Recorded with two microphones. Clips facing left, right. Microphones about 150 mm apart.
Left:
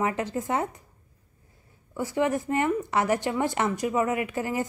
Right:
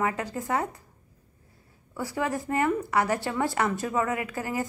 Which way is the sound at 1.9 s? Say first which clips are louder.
Left 4 dB; 20° left (ahead or behind).